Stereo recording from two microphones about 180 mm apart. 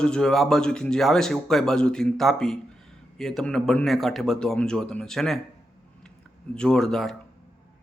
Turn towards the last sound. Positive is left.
turn(degrees=0)  # may be behind; listen again after turning